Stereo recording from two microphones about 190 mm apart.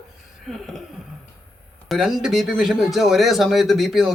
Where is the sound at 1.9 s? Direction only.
Centre (ahead or behind).